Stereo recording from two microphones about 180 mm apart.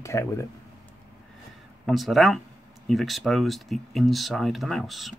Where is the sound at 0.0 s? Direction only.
15° left (ahead or behind).